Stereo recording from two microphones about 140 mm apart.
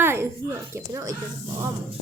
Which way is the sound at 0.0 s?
15° right (ahead or behind).